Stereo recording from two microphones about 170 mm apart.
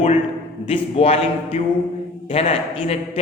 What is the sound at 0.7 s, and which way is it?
A man's voice, 35° left (ahead or behind).